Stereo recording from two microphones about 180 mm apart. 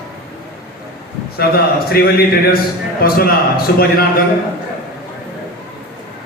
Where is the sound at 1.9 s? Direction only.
60° left (ahead or behind).